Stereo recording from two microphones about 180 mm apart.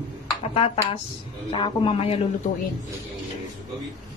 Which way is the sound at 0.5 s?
30° left (ahead or behind).